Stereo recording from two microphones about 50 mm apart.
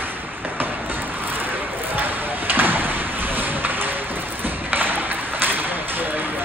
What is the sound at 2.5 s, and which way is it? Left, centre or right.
Slam, right.